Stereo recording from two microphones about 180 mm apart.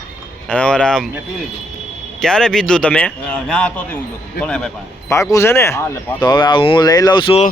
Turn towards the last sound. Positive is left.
turn(degrees=30)  # may be behind; listen again after turning